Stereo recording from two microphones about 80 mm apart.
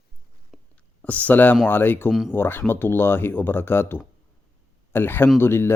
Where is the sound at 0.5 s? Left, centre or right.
Centre.